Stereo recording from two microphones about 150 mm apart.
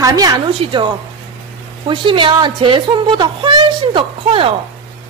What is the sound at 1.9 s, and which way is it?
A woman's voice, 35° right (ahead or behind).